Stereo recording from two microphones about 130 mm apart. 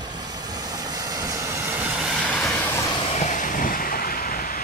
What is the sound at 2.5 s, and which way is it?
Vehicle, 20° left (ahead or behind).